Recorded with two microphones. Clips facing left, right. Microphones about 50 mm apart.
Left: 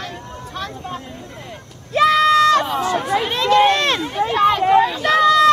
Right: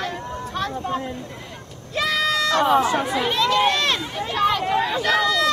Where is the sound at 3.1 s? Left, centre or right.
Centre.